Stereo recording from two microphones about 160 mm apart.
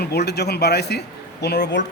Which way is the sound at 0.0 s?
90° left.